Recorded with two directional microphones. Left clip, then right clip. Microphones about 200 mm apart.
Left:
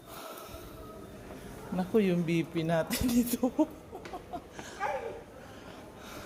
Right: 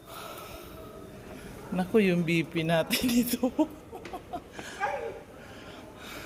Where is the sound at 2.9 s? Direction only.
60° left (ahead or behind).